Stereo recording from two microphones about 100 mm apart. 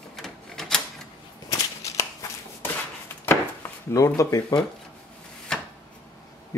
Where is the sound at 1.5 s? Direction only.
30° left (ahead or behind).